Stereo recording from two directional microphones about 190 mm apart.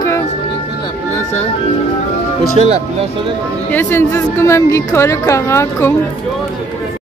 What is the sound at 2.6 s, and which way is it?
Speech, 30° right (ahead or behind).